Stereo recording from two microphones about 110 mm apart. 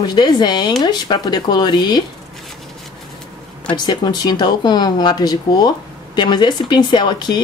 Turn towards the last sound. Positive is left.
turn(degrees=40)  # may be behind; listen again after turning